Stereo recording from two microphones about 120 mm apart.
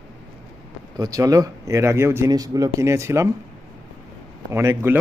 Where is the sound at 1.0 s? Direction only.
30° right (ahead or behind).